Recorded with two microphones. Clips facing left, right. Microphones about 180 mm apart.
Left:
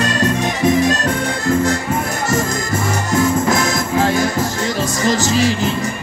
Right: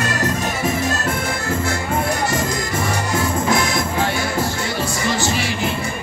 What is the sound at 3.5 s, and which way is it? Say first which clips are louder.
Music: left 2 dB; 45° left (ahead or behind).